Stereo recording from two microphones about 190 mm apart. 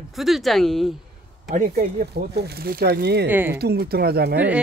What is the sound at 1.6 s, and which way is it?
Speech, 50° right (ahead or behind).